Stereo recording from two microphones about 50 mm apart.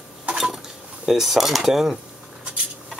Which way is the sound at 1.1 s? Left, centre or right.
Centre.